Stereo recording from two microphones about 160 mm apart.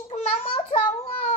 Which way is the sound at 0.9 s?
40° left (ahead or behind).